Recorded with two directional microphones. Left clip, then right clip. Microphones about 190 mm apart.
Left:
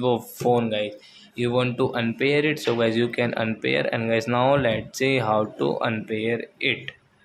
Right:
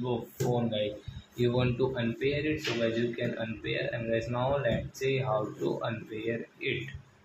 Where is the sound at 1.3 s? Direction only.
25° left (ahead or behind).